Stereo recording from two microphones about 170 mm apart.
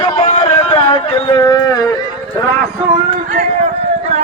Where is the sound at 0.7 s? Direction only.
30° left (ahead or behind).